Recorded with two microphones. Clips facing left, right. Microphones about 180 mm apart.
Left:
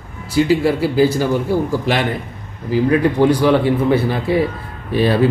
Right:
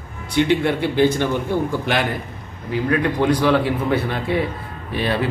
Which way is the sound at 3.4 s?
Centre (ahead or behind).